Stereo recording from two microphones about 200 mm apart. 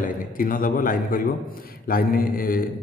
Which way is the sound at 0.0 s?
45° left (ahead or behind).